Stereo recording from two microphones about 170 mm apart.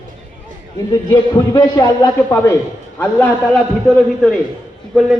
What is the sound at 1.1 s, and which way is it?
A man's voice, 25° left (ahead or behind).